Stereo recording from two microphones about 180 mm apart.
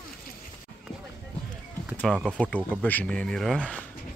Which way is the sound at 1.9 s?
5° left (ahead or behind).